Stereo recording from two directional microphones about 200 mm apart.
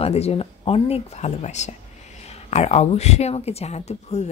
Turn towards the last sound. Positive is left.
turn(degrees=35)  # may be behind; listen again after turning